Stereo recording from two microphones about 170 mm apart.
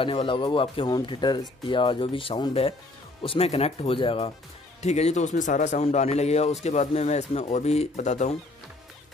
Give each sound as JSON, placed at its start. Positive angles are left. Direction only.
{"t": 0.0, "sound": "speech", "side_deg": 30}